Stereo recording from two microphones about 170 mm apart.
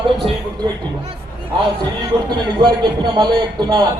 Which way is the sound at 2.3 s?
25° right (ahead or behind).